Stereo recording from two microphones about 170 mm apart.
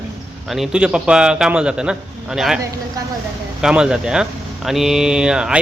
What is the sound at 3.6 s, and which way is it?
A man's voice, 5° right (ahead or behind).